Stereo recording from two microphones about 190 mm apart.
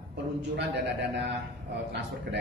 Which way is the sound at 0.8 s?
65° right (ahead or behind).